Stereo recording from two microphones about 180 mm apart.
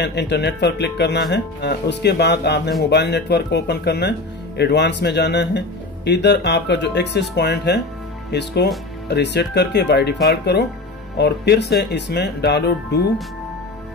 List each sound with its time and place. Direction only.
0.0 s speech: 70° left (ahead or behind)